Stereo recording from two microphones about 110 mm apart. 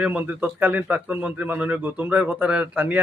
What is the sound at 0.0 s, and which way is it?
A man's voice, 15° right (ahead or behind).